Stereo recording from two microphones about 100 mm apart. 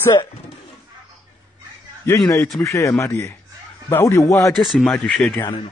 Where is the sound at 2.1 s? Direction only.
30° left (ahead or behind).